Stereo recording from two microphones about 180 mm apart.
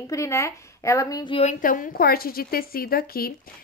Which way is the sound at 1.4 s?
45° left (ahead or behind).